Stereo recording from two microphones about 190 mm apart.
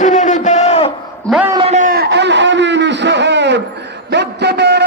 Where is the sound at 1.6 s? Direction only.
40° right (ahead or behind).